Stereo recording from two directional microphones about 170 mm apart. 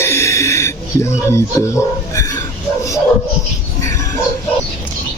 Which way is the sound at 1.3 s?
15° left (ahead or behind).